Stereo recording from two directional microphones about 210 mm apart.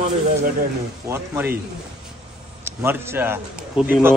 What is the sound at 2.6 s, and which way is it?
A man's voice, 10° right (ahead or behind).